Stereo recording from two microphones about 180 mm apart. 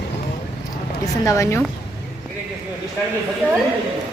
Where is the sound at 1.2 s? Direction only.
15° left (ahead or behind).